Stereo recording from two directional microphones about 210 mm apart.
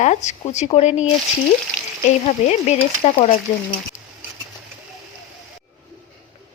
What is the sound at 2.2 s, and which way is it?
Speech, 35° left (ahead or behind).